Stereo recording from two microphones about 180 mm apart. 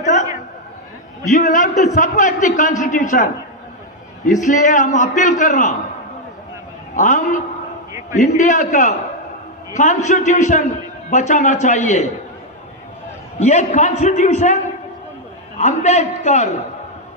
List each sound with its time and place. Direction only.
0.0 s a sound: 40° left (ahead or behind)
1.2 s a man's voice: 40° left (ahead or behind)
4.4 s a man's voice: 40° left (ahead or behind)
7.0 s a man's voice: 45° left (ahead or behind)
13.4 s a man's voice: 40° left (ahead or behind)